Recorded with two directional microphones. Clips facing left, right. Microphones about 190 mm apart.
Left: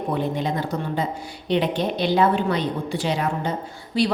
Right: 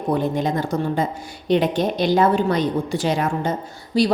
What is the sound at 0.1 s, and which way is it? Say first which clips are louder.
A woman's voice: right 5 dB; 45° right (ahead or behind).